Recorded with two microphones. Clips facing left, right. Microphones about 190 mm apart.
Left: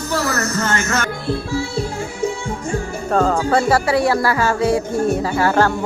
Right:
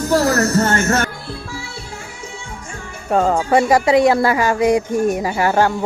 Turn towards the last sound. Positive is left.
turn(degrees=-15)  # may be behind; listen again after turning